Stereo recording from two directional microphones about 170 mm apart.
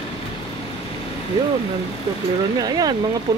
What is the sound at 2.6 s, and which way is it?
Speech, 20° right (ahead or behind).